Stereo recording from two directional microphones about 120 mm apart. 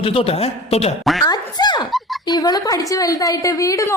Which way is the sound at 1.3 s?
35° left (ahead or behind).